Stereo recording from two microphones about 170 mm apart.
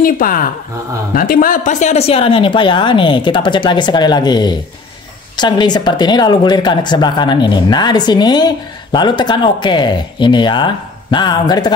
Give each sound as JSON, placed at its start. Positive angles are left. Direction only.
{"t": 0.0, "sound": "a woman's voice", "side_deg": 55}